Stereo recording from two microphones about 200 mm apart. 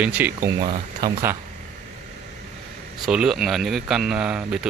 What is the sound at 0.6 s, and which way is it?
Speech, 25° right (ahead or behind).